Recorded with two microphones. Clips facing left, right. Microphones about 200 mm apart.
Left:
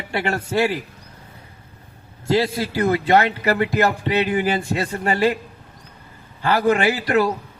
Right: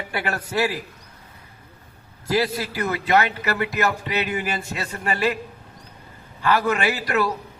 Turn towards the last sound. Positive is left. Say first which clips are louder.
# left 5 dB
turn(degrees=30)  # may be behind; listen again after turning